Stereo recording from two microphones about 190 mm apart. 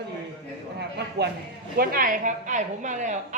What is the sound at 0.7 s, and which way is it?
Speech, 60° right (ahead or behind).